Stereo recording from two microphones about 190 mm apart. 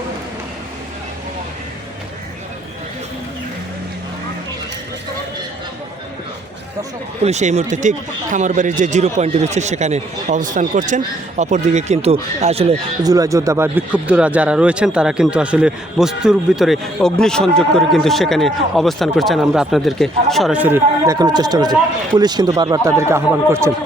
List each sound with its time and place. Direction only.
7.2 s speech: 35° right (ahead or behind)
13.0 s speech: 20° right (ahead or behind)